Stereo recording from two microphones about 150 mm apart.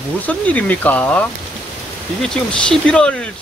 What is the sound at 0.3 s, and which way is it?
Speech, 10° left (ahead or behind).